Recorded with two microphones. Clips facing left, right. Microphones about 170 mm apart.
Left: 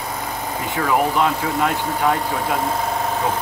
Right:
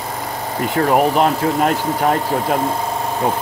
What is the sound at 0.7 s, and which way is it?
Speech, 55° right (ahead or behind).